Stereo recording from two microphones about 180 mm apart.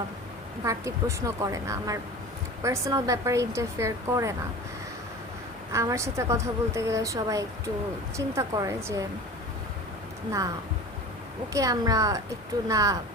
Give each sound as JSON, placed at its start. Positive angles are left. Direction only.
{"t": 0.6, "sound": "speech", "side_deg": -15}
{"t": 5.7, "sound": "speech", "side_deg": -15}
{"t": 11.5, "sound": "a woman's voice", "side_deg": -20}